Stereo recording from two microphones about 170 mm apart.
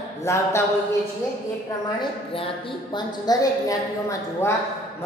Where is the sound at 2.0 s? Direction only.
30° left (ahead or behind).